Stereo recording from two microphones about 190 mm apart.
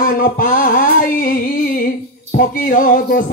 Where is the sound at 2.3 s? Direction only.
45° left (ahead or behind).